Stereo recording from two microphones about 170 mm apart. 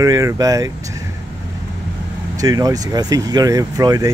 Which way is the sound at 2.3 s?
20° right (ahead or behind).